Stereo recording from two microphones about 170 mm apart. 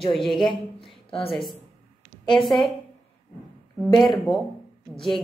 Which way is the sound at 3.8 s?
Centre (ahead or behind).